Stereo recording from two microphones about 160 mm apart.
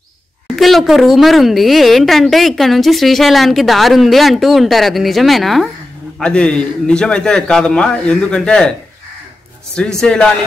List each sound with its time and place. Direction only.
0.6 s a woman's voice: centre (ahead or behind)
9.8 s a woman's voice: 5° left (ahead or behind)